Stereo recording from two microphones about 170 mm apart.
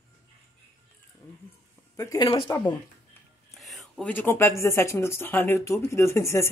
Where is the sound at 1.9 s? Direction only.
20° left (ahead or behind).